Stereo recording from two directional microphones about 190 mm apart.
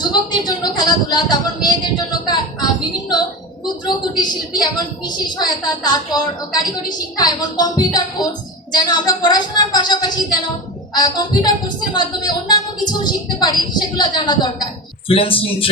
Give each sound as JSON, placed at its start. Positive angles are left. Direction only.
{"t": 0.0, "sound": "a woman's voice", "side_deg": 20}
{"t": 3.8, "sound": "a woman's voice", "side_deg": 20}